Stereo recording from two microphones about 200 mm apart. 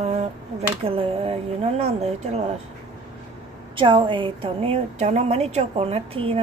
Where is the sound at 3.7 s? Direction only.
25° right (ahead or behind).